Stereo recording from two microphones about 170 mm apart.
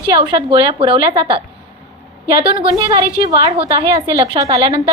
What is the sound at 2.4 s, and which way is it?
A woman's voice, 30° right (ahead or behind).